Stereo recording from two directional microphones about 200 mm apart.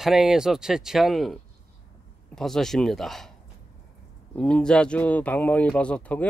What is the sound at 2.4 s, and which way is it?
Speech, centre (ahead or behind).